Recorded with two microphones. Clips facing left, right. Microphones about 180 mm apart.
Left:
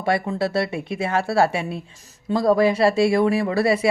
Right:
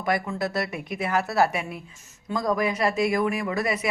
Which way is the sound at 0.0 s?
30° left (ahead or behind).